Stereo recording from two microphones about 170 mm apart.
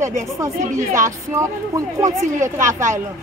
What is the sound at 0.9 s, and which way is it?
Speech, 15° right (ahead or behind).